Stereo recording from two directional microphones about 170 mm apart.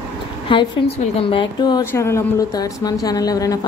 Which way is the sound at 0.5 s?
30° left (ahead or behind).